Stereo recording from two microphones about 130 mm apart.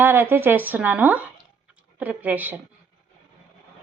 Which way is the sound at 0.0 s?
15° right (ahead or behind).